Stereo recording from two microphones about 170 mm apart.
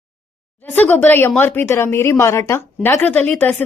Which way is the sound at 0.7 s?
10° left (ahead or behind).